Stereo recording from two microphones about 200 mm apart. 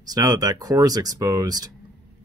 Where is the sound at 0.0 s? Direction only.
20° right (ahead or behind).